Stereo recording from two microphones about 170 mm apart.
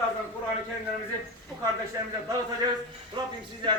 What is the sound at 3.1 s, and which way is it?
Speech, 25° right (ahead or behind).